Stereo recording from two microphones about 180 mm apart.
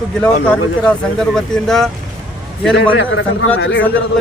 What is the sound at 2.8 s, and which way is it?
Speech, 90° left.